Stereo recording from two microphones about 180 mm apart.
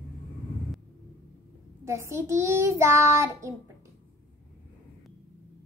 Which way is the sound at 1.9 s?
15° right (ahead or behind).